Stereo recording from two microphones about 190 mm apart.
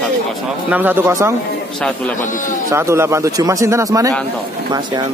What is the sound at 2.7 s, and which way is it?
A man's voice, 15° right (ahead or behind).